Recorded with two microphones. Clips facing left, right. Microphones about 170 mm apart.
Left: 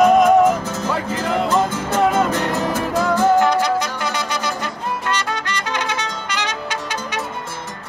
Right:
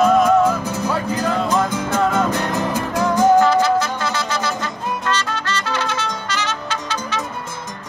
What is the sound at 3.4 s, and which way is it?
Music, 15° left (ahead or behind).